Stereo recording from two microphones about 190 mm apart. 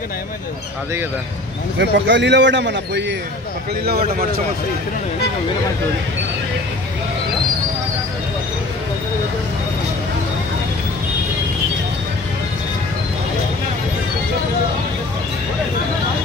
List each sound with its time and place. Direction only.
1.8 s a man's voice: 70° right (ahead or behind)